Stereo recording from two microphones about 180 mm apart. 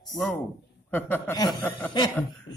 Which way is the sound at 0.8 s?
10° left (ahead or behind).